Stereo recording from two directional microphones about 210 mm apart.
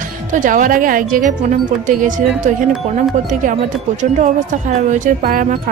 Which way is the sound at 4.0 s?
35° right (ahead or behind).